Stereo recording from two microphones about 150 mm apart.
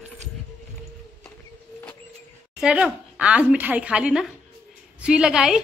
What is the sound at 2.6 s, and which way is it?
A woman's voice, 5° right (ahead or behind).